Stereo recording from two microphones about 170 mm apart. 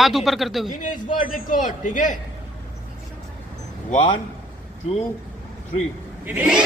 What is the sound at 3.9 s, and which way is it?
Speech, 30° left (ahead or behind).